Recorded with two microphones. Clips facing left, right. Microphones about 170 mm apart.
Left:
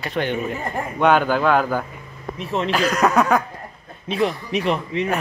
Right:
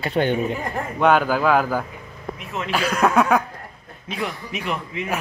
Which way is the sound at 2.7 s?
5° right (ahead or behind).